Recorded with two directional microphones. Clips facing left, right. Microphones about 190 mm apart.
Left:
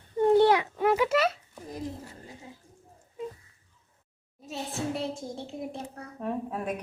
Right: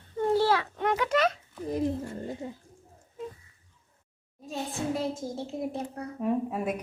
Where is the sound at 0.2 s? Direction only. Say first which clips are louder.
Left 4 dB; 20° left (ahead or behind).